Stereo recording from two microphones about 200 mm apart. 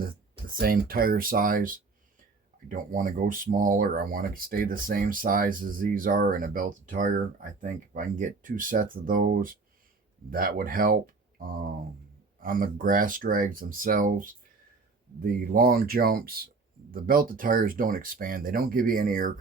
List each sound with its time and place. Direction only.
0.0 s speech: 45° right (ahead or behind)